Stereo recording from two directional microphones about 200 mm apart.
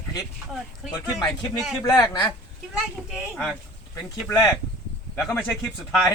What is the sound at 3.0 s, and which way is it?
Speech, centre (ahead or behind).